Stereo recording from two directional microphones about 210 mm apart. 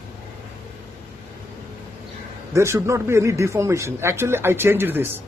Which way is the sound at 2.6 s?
15° right (ahead or behind).